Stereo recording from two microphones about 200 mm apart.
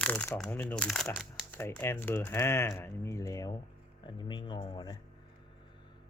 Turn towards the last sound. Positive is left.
turn(degrees=20)  # may be behind; listen again after turning